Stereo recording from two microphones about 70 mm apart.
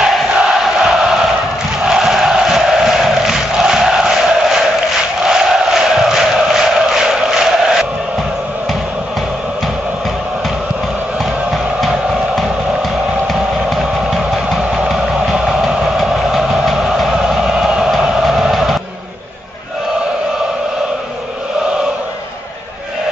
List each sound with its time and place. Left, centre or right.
0.0 s chant: centre
11.5 s music: centre
14.6 s music: centre
14.9 s music: centre